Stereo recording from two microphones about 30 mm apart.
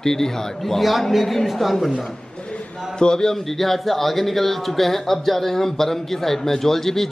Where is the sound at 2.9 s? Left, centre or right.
Left.